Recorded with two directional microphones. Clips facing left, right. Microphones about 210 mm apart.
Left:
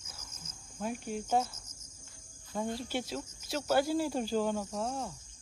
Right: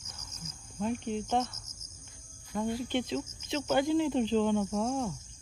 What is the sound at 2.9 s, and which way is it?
Speech, 5° left (ahead or behind).